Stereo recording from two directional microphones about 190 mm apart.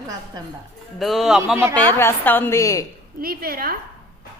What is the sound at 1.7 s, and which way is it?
A woman's voice, 10° left (ahead or behind).